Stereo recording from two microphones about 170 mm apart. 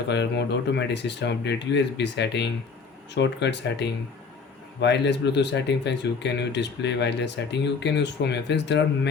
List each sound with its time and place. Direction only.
0.1 s speech: 90° left